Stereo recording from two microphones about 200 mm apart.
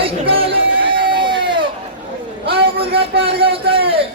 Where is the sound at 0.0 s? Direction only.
30° right (ahead or behind).